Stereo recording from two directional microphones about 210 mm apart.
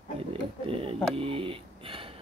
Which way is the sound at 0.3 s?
25° right (ahead or behind).